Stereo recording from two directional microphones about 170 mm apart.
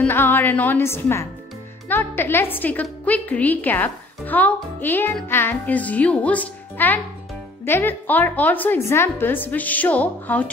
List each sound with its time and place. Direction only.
0.0 s a woman's voice: 10° left (ahead or behind)